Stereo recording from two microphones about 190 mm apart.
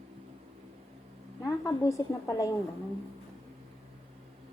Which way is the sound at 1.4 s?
15° left (ahead or behind).